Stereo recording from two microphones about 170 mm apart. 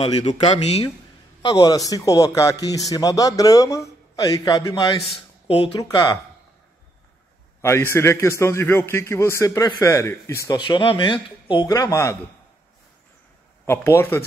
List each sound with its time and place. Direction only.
0.0 s a man's voice: 40° left (ahead or behind); by 5.0 s 20° left (ahead or behind)
5.5 s speech: 35° left (ahead or behind)
5.8 s a man's voice: 20° left (ahead or behind)
7.6 s a man's voice: 15° left (ahead or behind)
13.7 s a man's voice: 15° left (ahead or behind)